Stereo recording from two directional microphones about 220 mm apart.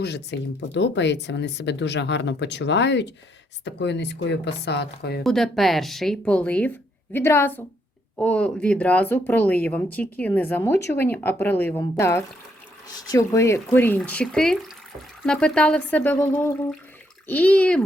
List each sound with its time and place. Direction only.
0.0 s speech: 50° left (ahead or behind)
5.2 s speech: centre (ahead or behind)